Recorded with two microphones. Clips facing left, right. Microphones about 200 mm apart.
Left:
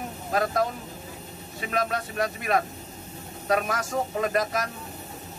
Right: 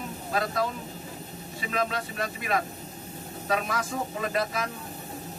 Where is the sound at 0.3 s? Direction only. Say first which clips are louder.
Left 3 dB; 45° left (ahead or behind).